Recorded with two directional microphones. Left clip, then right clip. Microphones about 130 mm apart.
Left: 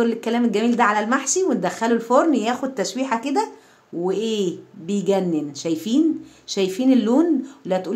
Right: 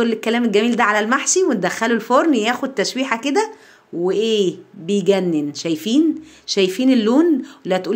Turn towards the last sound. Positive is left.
turn(degrees=-15)  # may be behind; listen again after turning